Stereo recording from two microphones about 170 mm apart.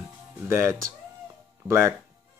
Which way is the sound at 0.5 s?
15° right (ahead or behind).